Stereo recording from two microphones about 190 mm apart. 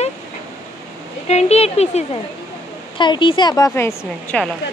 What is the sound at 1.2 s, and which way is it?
A woman's voice, 35° left (ahead or behind).